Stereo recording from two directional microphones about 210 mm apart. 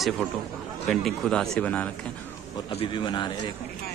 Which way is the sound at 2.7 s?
25° left (ahead or behind).